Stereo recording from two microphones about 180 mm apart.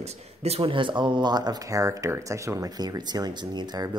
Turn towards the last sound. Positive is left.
turn(degrees=-20)  # may be behind; listen again after turning